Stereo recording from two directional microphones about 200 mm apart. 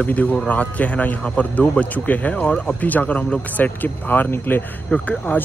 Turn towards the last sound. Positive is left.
turn(degrees=10)  # may be behind; listen again after turning